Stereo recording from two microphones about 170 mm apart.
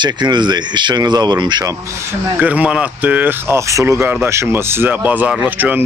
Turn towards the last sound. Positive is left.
turn(degrees=-10)  # may be behind; listen again after turning